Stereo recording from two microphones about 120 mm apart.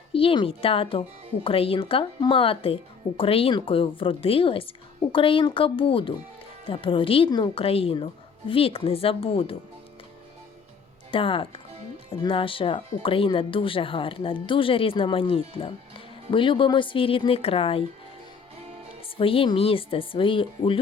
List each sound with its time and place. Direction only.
0.1 s speech: 50° left (ahead or behind)
7.3 s a woman's voice: 40° left (ahead or behind)
7.6 s speech: 55° left (ahead or behind)
11.1 s speech: 45° left (ahead or behind)
19.0 s speech: 50° left (ahead or behind)